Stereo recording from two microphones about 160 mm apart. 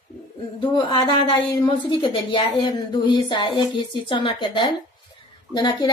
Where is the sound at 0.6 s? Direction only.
30° left (ahead or behind).